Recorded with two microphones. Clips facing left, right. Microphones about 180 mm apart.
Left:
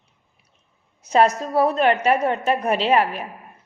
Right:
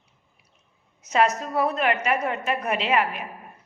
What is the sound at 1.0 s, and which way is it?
A woman's voice, 30° left (ahead or behind).